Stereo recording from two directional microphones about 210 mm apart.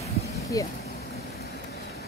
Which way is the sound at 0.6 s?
15° left (ahead or behind).